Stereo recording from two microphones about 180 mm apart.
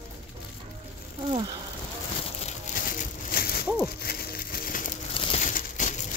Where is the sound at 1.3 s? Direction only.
30° right (ahead or behind).